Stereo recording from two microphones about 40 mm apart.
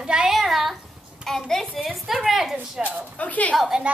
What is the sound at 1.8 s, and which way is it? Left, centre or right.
Speech, centre.